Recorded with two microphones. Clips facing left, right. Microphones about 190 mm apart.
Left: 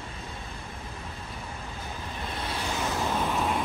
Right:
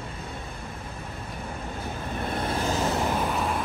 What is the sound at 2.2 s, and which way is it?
Vehicle, 55° right (ahead or behind).